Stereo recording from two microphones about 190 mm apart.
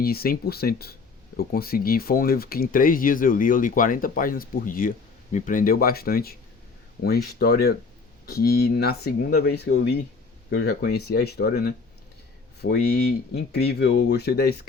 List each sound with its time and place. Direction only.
0.0 s speech: 50° left (ahead or behind)
12.9 s speech: 60° left (ahead or behind)